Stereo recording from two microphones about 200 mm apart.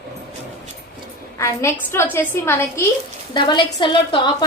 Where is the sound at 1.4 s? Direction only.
15° left (ahead or behind).